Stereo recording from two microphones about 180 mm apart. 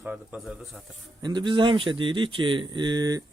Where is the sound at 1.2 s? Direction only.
25° right (ahead or behind).